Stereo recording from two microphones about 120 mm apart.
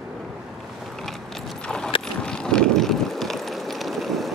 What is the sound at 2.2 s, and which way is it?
Vehicle, 5° left (ahead or behind).